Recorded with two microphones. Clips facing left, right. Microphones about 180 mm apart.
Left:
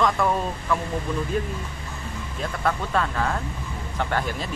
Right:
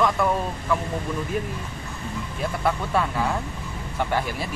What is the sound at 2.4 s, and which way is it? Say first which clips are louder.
Speech: right 1 dB; 10° right (ahead or behind).